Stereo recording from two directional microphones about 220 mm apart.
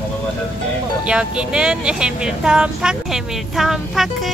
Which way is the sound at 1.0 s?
5° right (ahead or behind).